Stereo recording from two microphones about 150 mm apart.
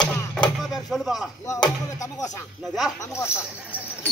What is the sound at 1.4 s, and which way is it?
Speech, 20° left (ahead or behind).